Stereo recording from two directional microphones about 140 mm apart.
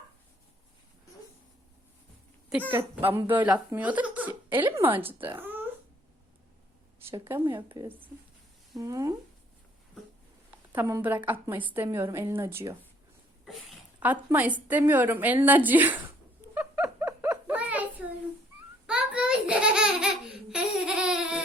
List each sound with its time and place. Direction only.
2.7 s a woman's voice: 15° right (ahead or behind)
5.4 s a sound: 15° right (ahead or behind)
7.1 s a woman's voice: 15° right (ahead or behind)
8.8 s speech: 25° right (ahead or behind)
10.8 s a woman's voice: 15° right (ahead or behind)
13.4 s a sound: centre (ahead or behind)
14.0 s a woman's voice: 10° right (ahead or behind)
16.6 s a sound: 10° right (ahead or behind)
18.9 s baby laughter: 5° right (ahead or behind)